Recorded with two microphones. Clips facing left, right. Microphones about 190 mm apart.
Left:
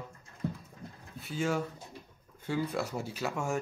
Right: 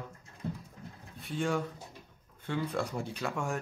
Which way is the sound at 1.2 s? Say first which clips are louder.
Even; 5° left (ahead or behind).